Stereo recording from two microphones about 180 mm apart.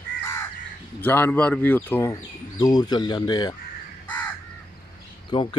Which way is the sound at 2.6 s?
20° left (ahead or behind).